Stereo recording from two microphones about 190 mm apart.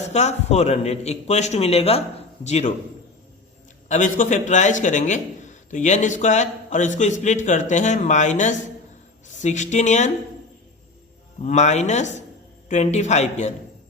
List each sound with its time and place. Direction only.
0.1 s a man's voice: 35° left (ahead or behind)
3.8 s a man's voice: 40° left (ahead or behind)
11.4 s a man's voice: 40° left (ahead or behind)